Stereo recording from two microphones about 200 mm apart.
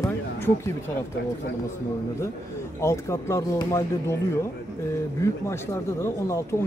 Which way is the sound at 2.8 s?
15° left (ahead or behind).